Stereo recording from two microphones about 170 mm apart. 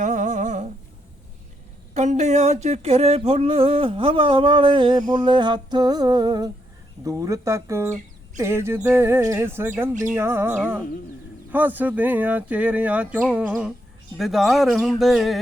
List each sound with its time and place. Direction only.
0.0 s humming: 45° right (ahead or behind)
1.9 s a sound: 45° right (ahead or behind); by 6.5 s 25° right (ahead or behind)
7.0 s speech: 20° right (ahead or behind); by 15.4 s centre (ahead or behind)